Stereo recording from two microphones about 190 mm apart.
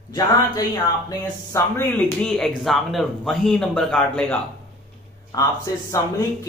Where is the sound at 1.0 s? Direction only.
15° left (ahead or behind).